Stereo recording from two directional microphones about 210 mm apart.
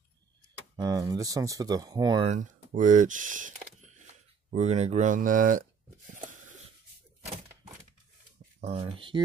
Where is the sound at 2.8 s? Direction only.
35° right (ahead or behind).